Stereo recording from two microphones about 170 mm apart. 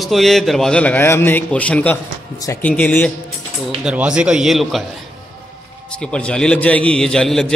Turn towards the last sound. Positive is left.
turn(degrees=5)  # may be behind; listen again after turning